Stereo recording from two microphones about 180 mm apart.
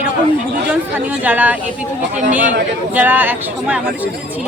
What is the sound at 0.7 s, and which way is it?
Speech, 10° right (ahead or behind).